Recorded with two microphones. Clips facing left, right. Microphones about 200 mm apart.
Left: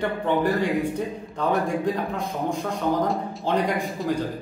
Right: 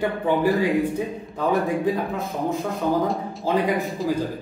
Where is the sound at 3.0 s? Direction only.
Centre (ahead or behind).